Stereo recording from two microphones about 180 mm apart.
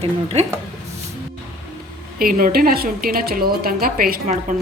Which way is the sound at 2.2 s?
55° right (ahead or behind).